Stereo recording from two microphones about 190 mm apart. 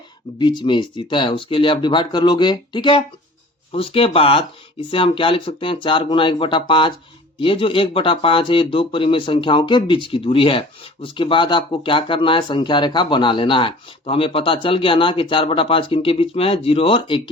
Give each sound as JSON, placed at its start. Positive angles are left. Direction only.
{"t": 0.3, "sound": "speech", "side_deg": 25}